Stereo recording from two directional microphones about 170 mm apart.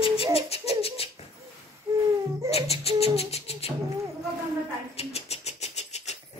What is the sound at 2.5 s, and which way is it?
Beatboxing, 35° left (ahead or behind).